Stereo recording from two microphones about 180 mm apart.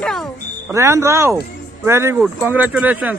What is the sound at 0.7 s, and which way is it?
Speech, 15° right (ahead or behind).